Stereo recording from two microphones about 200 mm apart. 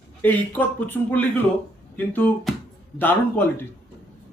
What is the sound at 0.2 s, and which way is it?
Speech, 10° left (ahead or behind).